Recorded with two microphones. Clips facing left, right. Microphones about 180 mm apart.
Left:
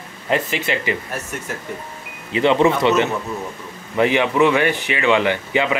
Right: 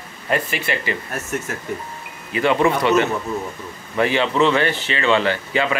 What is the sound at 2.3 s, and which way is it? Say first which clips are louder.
A man's voice: left 2 dB; 20° left (ahead or behind).